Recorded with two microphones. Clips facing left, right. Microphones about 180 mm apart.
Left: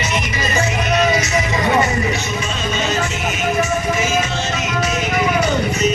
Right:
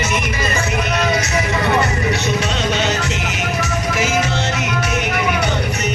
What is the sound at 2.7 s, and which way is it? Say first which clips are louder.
Music: right 1 dB; 70° right (ahead or behind).